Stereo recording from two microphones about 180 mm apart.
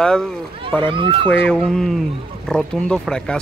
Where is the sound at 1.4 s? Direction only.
5° left (ahead or behind).